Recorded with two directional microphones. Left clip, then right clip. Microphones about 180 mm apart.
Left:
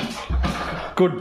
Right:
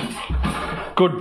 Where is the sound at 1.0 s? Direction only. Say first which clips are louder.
Right 2 dB; 5° left (ahead or behind).